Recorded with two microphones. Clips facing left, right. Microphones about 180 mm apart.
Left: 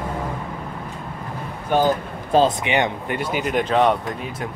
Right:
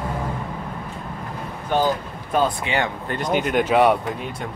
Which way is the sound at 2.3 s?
25° left (ahead or behind).